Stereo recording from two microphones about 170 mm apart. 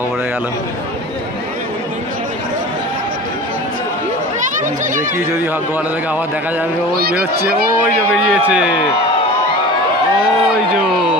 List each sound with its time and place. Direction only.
4.4 s speech: 50° right (ahead or behind)
5.1 s speech: 15° right (ahead or behind)
7.0 s speech: 65° right (ahead or behind)
8.3 s speech: 5° right (ahead or behind)